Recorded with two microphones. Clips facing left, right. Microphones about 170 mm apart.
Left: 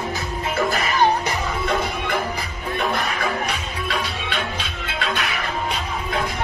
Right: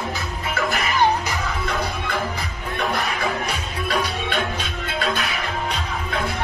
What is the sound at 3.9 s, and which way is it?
Music, 45° right (ahead or behind).